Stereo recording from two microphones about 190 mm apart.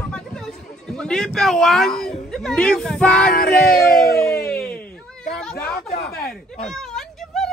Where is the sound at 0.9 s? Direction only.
5° left (ahead or behind).